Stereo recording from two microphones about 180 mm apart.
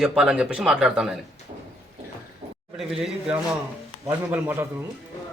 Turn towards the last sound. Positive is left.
turn(degrees=-10)  # may be behind; listen again after turning